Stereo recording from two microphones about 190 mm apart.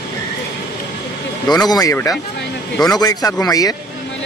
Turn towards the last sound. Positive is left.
turn(degrees=20)  # may be behind; listen again after turning